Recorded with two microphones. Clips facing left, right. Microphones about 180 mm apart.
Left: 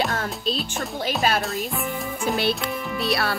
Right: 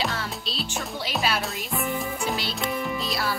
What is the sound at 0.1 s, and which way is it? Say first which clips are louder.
Music: left 6 dB; 50° left (ahead or behind).